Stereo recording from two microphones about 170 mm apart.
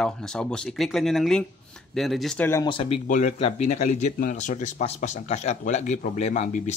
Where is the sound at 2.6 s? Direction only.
30° left (ahead or behind).